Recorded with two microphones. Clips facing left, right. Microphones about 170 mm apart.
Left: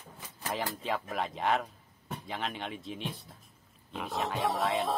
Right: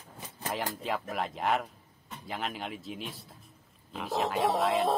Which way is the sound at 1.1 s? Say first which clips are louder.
Even; centre (ahead or behind).